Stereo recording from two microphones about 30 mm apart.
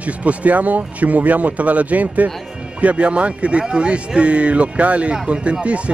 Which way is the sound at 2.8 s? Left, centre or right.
Right.